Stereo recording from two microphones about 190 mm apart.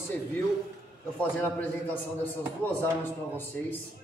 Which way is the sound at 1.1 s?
10° left (ahead or behind).